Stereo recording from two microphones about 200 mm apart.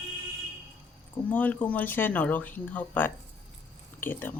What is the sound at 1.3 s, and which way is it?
Speech, 10° left (ahead or behind).